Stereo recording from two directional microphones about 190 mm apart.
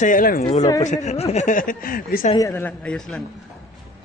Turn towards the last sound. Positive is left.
turn(degrees=0)  # may be behind; listen again after turning